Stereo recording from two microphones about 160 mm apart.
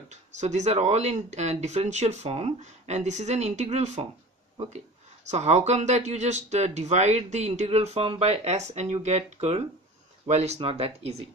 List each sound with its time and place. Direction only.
0.1 s speech: 45° right (ahead or behind)
5.3 s speech: 45° right (ahead or behind)